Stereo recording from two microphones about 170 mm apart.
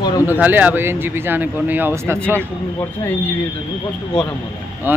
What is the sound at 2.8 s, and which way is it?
Speech, 10° left (ahead or behind).